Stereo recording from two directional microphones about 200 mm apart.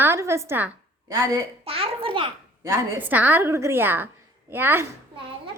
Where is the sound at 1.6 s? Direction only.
30° right (ahead or behind).